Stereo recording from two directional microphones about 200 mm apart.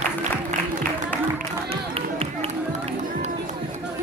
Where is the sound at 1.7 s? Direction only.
30° right (ahead or behind).